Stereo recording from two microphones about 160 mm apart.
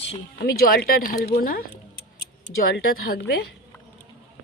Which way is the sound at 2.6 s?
70° left (ahead or behind).